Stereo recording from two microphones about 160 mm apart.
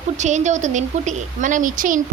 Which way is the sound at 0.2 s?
50° right (ahead or behind).